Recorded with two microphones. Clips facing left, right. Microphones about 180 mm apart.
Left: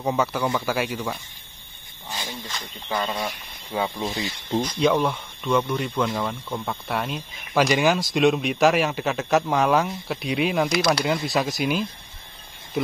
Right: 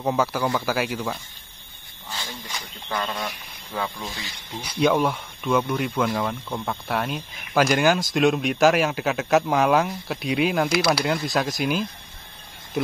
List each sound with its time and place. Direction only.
0.0 s speech: centre (ahead or behind)
2.0 s a sound: 15° left (ahead or behind)
2.9 s speech: 10° left (ahead or behind)
4.6 s speech: 5° right (ahead or behind)